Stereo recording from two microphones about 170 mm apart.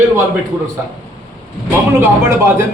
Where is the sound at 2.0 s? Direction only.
15° right (ahead or behind).